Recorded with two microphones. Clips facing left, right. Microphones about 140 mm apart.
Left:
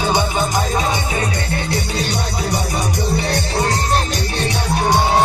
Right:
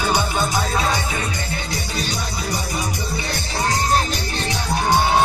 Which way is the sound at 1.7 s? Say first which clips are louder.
Left 5 dB; 70° left (ahead or behind).